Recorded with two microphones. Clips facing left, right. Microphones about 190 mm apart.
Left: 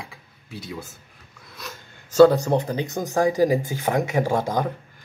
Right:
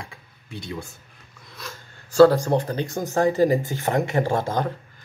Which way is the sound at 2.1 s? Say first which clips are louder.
Even; 20° left (ahead or behind).